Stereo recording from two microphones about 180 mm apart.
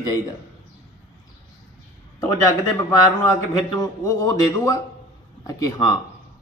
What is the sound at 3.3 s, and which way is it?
A man's voice, 20° left (ahead or behind).